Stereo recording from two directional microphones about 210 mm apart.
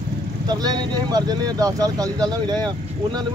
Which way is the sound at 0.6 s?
20° right (ahead or behind).